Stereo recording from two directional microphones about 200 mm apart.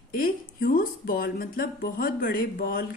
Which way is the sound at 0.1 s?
45° left (ahead or behind).